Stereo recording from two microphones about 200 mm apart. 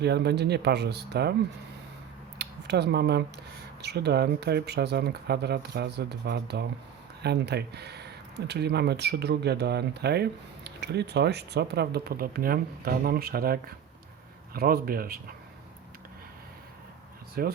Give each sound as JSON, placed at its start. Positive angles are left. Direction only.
{"t": 0.0, "sound": "speech", "side_deg": -55}
{"t": 2.4, "sound": "speech", "side_deg": -55}
{"t": 17.4, "sound": "speech", "side_deg": -50}